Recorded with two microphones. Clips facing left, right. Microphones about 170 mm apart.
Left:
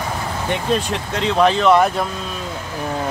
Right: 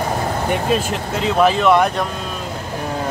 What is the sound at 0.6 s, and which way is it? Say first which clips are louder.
Speech: right 1 dB; 5° right (ahead or behind).